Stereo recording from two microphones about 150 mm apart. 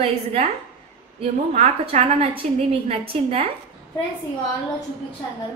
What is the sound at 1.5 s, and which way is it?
A woman's voice, 50° right (ahead or behind).